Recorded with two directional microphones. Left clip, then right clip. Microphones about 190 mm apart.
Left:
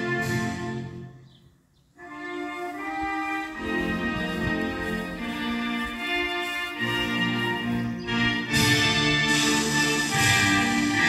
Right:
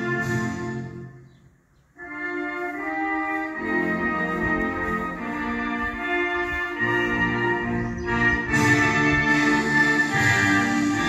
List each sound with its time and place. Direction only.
0.0 s music: 55° right (ahead or behind)
2.4 s music: 35° right (ahead or behind); by 11.1 s 55° right (ahead or behind)